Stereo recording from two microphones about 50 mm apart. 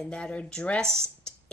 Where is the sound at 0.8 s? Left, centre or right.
Centre.